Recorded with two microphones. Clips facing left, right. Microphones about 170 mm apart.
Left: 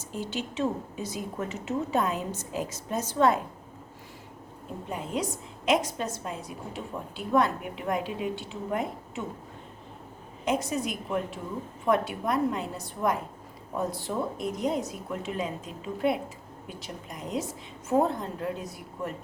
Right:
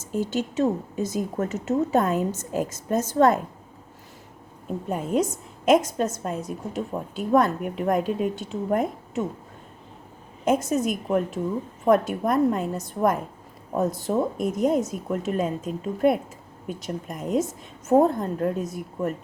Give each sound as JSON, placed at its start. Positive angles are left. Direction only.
{"t": 0.0, "sound": "a woman's voice", "side_deg": -45}
{"t": 4.9, "sound": "a woman's voice", "side_deg": -45}
{"t": 10.4, "sound": "a woman's voice", "side_deg": -45}